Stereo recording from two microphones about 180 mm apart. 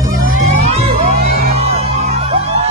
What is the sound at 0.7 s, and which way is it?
Music, 35° right (ahead or behind).